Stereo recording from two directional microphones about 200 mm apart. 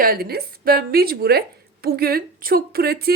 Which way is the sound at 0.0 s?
45° right (ahead or behind).